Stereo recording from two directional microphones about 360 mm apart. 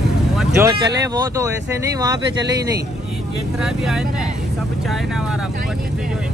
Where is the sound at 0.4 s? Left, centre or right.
Centre.